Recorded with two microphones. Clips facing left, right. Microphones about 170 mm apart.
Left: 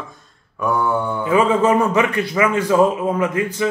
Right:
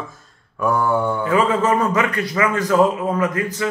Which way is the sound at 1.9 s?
20° left (ahead or behind).